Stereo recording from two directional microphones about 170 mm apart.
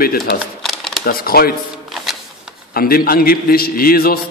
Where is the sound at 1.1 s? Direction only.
60° left (ahead or behind).